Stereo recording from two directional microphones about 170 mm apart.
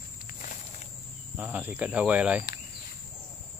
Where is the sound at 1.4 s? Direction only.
10° right (ahead or behind).